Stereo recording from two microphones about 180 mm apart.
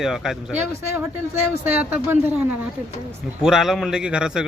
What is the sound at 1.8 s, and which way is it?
A man's voice, 10° right (ahead or behind).